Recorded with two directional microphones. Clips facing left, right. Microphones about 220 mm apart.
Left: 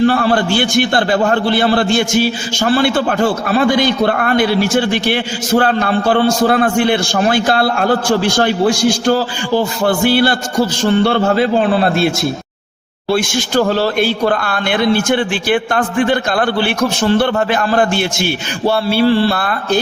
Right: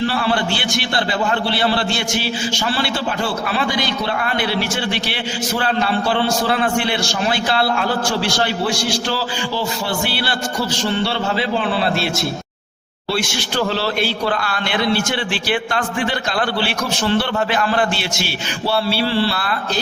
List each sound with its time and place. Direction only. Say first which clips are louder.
0.0 s a man's voice: left 7 dB; 45° left (ahead or behind)